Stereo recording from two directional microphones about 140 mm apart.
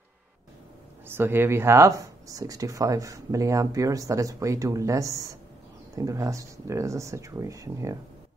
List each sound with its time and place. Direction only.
1.0 s speech: 15° right (ahead or behind)